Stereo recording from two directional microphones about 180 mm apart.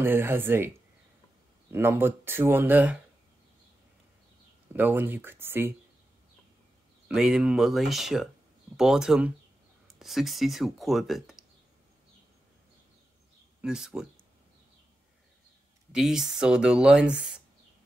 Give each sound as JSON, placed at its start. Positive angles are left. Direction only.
{"t": 0.0, "sound": "speech", "side_deg": -10}
{"t": 1.7, "sound": "speech", "side_deg": -15}
{"t": 4.7, "sound": "speech", "side_deg": -10}
{"t": 7.2, "sound": "speech", "side_deg": -5}
{"t": 13.6, "sound": "speech", "side_deg": -5}
{"t": 15.9, "sound": "speech", "side_deg": -5}